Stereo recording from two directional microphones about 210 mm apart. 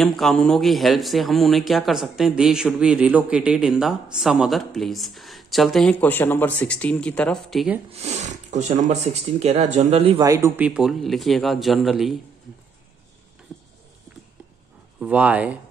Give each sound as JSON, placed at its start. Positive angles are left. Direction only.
{"t": 0.0, "sound": "speech", "side_deg": 0}
{"t": 7.9, "sound": "speech", "side_deg": -30}
{"t": 15.0, "sound": "speech", "side_deg": -5}